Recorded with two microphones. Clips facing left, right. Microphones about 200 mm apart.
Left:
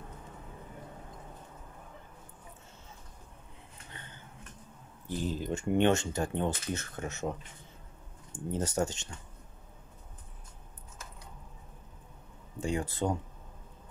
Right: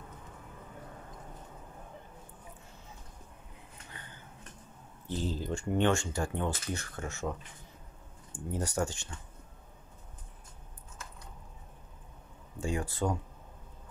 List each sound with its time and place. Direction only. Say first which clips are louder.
5.0 s speech: left 1 dB; 15° left (ahead or behind)
8.5 s speech: left 2 dB; 20° left (ahead or behind)
12.5 s speech: left 1 dB; 20° left (ahead or behind)